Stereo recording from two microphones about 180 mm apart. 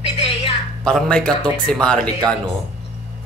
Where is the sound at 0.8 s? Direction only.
5° left (ahead or behind).